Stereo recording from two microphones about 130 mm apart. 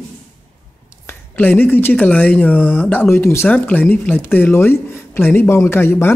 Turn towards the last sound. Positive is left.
turn(degrees=15)  # may be behind; listen again after turning